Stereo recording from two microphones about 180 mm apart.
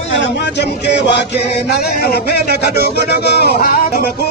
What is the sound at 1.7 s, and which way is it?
Speech, 60° left (ahead or behind).